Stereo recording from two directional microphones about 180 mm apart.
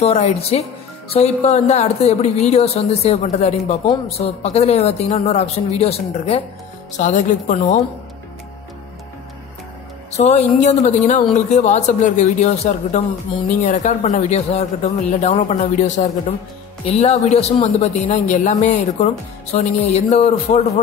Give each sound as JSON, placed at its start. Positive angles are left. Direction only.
{"t": 0.0, "sound": "a woman's voice", "side_deg": 35}
{"t": 10.1, "sound": "a woman's voice", "side_deg": 40}